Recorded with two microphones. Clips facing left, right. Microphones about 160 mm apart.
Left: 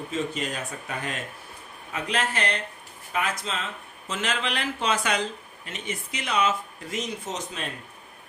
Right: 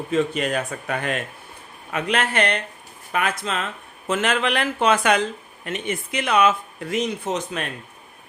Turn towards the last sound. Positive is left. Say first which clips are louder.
# right 7 dB
turn(degrees=-60)  # may be behind; listen again after turning